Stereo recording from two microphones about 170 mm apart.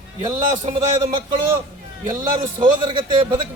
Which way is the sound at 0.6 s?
30° right (ahead or behind).